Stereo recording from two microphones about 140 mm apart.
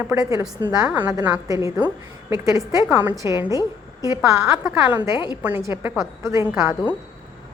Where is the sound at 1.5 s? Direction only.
25° right (ahead or behind).